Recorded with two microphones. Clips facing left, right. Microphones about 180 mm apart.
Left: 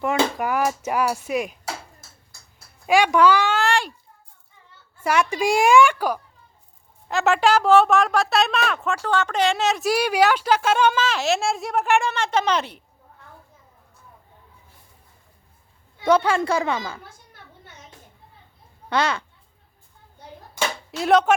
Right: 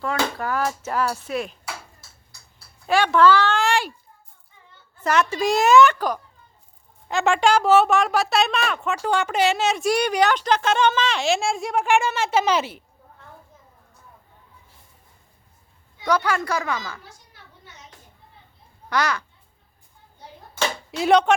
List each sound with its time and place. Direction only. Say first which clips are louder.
0.0 s a woman's voice: left 3 dB; 15° left (ahead or behind)
2.8 s a woman's voice: even; 10° left (ahead or behind)
3.6 s a sound: even; centre (ahead or behind)
4.9 s a woman's voice: even; 10° left (ahead or behind)
9.0 s speech: right 2 dB; 15° right (ahead or behind)
16.0 s a woman's voice: left 4 dB; 25° left (ahead or behind)
17.0 s a sound: left 2 dB; 50° left (ahead or behind)
18.9 s a woman's voice: left 1 dB; 25° left (ahead or behind)
20.9 s speech: even; centre (ahead or behind)